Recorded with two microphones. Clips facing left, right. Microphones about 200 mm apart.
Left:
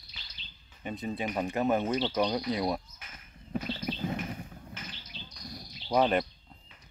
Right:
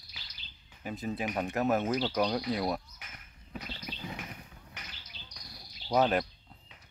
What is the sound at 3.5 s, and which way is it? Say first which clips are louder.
Bird: left 9 dB; 50° left (ahead or behind).